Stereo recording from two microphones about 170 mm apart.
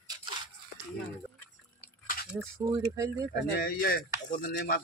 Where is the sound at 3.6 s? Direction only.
60° left (ahead or behind).